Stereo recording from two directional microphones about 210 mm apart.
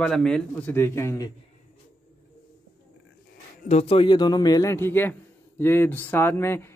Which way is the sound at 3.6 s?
30° left (ahead or behind).